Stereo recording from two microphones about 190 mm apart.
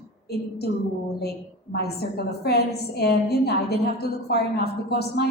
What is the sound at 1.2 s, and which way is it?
A woman's voice, 60° left (ahead or behind).